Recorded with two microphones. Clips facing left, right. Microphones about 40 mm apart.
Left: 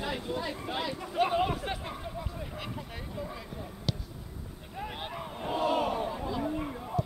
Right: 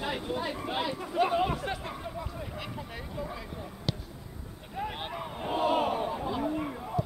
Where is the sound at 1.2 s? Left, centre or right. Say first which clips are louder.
Right 1 dB; centre.